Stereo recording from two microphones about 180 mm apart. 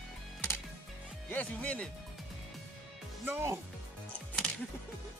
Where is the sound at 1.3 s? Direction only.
10° left (ahead or behind).